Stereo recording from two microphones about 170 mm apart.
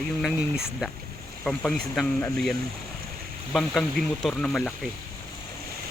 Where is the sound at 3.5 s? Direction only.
5° left (ahead or behind).